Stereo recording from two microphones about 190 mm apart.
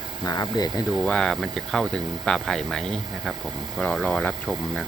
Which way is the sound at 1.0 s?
5° left (ahead or behind).